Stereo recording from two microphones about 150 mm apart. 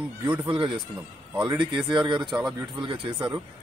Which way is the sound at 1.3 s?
5° right (ahead or behind).